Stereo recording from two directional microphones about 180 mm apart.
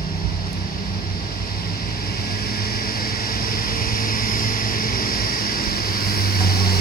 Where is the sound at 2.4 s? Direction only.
60° left (ahead or behind).